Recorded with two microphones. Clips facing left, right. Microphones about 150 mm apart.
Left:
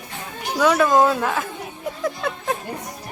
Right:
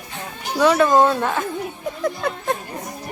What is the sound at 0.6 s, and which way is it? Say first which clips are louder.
Speech: right 1 dB; centre (ahead or behind).